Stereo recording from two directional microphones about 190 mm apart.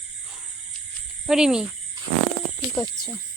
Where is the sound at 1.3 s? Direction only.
5° right (ahead or behind).